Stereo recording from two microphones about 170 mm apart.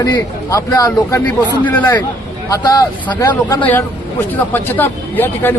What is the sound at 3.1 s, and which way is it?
Speech, 25° left (ahead or behind).